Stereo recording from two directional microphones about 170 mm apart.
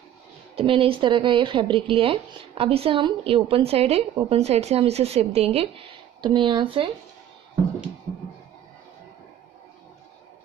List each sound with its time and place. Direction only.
0.6 s speech: 35° right (ahead or behind)